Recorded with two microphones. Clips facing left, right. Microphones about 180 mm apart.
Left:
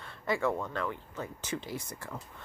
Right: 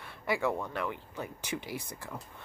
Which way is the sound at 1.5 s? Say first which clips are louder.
Left 1 dB; 25° left (ahead or behind).